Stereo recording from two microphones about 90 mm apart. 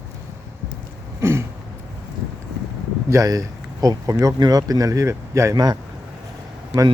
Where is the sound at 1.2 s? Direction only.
30° right (ahead or behind).